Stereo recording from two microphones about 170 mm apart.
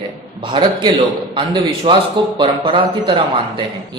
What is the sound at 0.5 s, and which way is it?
Speech, 30° right (ahead or behind).